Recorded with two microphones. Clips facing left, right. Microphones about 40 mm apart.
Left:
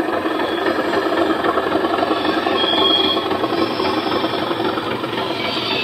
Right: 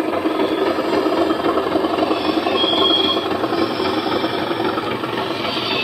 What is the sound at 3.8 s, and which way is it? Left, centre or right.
Train, centre.